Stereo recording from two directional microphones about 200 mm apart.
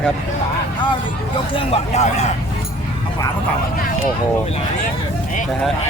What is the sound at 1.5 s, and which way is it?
Speech, 30° left (ahead or behind).